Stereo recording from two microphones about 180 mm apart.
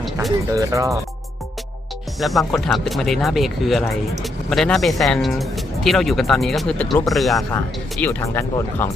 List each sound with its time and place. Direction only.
0.0 s a sound: centre (ahead or behind)
0.5 s speech: 15° right (ahead or behind)
2.2 s speech: centre (ahead or behind)
8.0 s speech: 15° left (ahead or behind)